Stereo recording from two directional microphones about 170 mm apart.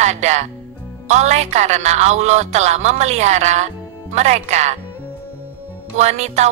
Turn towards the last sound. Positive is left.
turn(degrees=-40)  # may be behind; listen again after turning